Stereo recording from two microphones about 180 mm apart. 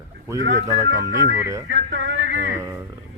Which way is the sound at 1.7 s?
90° right.